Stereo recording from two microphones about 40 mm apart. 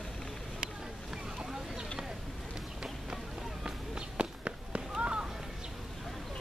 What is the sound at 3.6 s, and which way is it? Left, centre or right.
Run, right.